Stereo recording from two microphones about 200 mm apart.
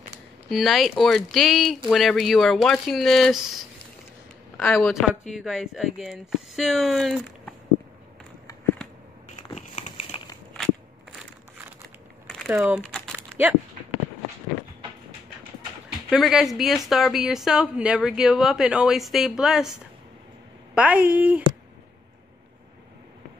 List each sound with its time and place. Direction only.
0.5 s a woman's voice: centre (ahead or behind)
9.6 s crumpling: 35° left (ahead or behind)
12.4 s speech: 15° right (ahead or behind)
12.9 s typing: 5° left (ahead or behind)
16.1 s a woman's voice: centre (ahead or behind)
20.7 s a woman's voice: 5° right (ahead or behind)